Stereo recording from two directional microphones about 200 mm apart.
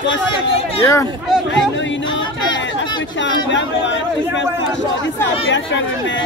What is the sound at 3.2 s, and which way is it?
Speech, 65° left (ahead or behind).